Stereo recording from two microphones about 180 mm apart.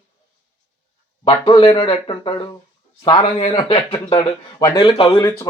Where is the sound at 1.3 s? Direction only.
30° left (ahead or behind).